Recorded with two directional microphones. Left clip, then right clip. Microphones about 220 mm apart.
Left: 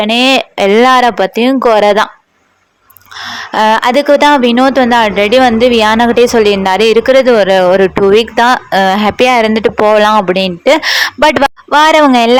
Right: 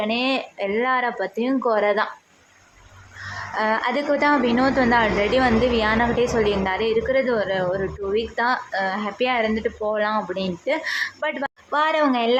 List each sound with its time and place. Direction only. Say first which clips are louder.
0.0 s speech: left 14 dB; 45° left (ahead or behind)
3.5 s speech: left 14 dB; 40° left (ahead or behind)